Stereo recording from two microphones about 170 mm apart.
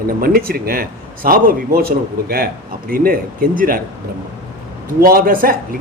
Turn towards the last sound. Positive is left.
turn(degrees=-55)  # may be behind; listen again after turning